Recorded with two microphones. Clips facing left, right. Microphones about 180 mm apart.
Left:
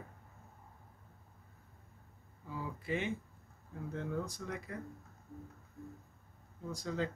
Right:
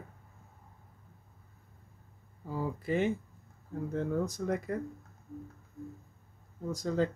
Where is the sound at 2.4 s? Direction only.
40° right (ahead or behind).